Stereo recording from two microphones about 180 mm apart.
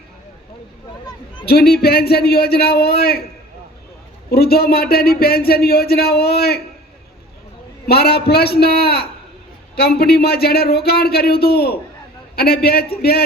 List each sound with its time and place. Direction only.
1.5 s speech: 60° left (ahead or behind)
4.3 s speech: 60° left (ahead or behind)
7.9 s speech: 60° left (ahead or behind)